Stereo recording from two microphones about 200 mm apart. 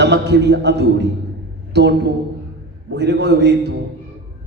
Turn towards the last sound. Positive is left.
turn(degrees=-55)  # may be behind; listen again after turning